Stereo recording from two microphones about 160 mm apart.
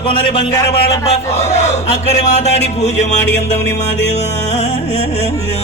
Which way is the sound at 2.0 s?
45° left (ahead or behind).